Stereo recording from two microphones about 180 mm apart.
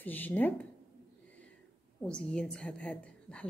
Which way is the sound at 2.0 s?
5° left (ahead or behind).